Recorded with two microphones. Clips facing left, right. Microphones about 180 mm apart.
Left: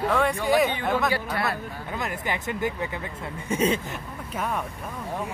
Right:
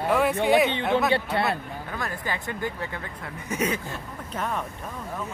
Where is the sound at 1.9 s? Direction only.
20° left (ahead or behind).